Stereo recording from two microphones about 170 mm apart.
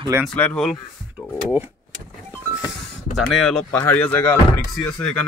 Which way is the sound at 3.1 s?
Centre (ahead or behind).